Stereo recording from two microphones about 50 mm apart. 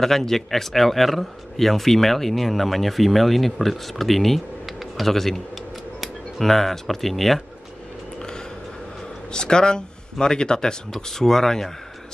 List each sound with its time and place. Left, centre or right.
0.0 s speech: centre
9.3 s speech: centre